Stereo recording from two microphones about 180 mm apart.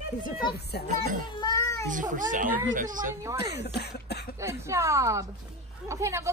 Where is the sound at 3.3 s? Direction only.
65° left (ahead or behind).